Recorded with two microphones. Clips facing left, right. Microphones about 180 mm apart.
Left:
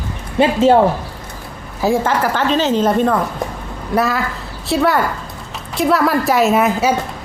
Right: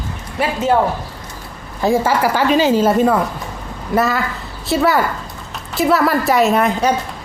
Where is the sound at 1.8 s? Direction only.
5° right (ahead or behind).